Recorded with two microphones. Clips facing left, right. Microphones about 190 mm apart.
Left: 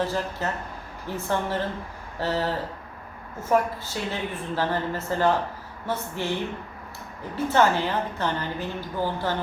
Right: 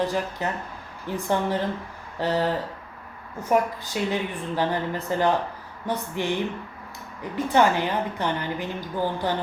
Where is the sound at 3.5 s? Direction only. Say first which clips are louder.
Right 1 dB; 15° right (ahead or behind).